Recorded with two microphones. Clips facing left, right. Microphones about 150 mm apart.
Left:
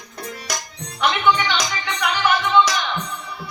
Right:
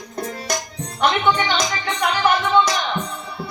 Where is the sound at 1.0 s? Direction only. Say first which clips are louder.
Right 1 dB; 45° right (ahead or behind).